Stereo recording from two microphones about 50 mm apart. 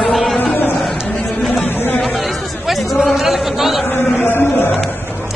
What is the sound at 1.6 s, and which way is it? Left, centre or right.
Chatter, left.